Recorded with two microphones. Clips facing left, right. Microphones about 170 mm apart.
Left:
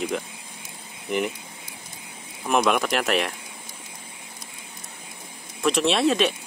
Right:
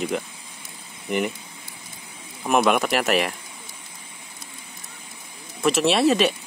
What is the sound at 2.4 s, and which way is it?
Speech, 5° right (ahead or behind).